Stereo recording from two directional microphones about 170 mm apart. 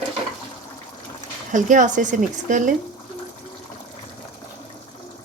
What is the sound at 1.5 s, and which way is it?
Speech, 50° right (ahead or behind).